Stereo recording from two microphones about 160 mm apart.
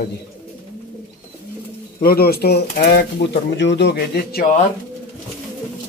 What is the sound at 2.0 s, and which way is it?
Speech, 75° left (ahead or behind).